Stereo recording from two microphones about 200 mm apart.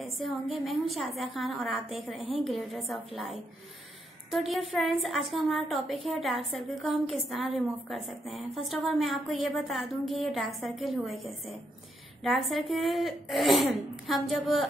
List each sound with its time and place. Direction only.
0.0 s a woman's voice: centre (ahead or behind)
4.3 s a woman's voice: centre (ahead or behind)